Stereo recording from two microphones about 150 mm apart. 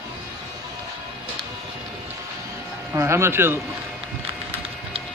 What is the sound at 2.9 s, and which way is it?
Speech, 20° right (ahead or behind).